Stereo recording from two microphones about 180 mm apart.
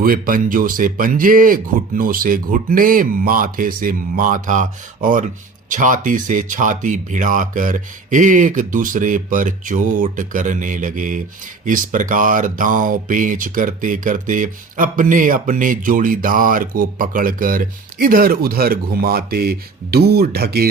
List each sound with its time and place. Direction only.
0.0 s speech: 50° right (ahead or behind)